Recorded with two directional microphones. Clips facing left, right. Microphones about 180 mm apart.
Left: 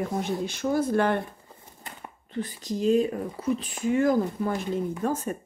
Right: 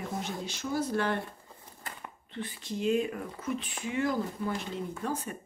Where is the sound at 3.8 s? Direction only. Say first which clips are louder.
Left 8 dB; 45° left (ahead or behind).